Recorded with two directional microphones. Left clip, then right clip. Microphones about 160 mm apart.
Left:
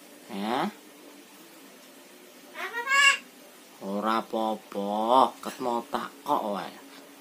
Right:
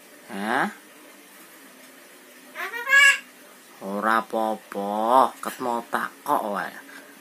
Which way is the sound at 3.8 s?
20° right (ahead or behind).